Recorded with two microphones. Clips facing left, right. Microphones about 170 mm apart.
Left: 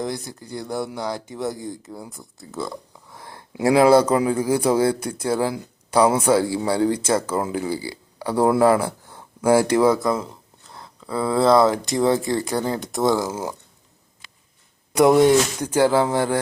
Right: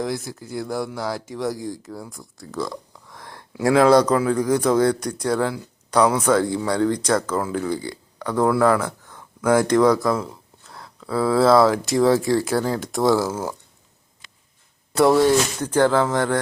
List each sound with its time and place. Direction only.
0.0 s speech: centre (ahead or behind)
2.0 s a sound: centre (ahead or behind)
3.7 s speech: 15° left (ahead or behind)
8.4 s a sound: 25° left (ahead or behind)
9.6 s speech: 10° left (ahead or behind)
13.2 s speech: 10° left (ahead or behind)
14.9 s speech: 20° left (ahead or behind)